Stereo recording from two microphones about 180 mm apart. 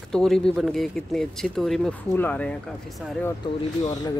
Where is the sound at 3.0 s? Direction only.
5° right (ahead or behind).